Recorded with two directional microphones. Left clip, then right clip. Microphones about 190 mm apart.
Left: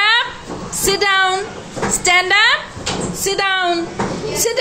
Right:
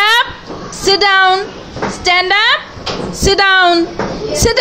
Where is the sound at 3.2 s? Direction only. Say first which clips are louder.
Right 9 dB; 35° right (ahead or behind).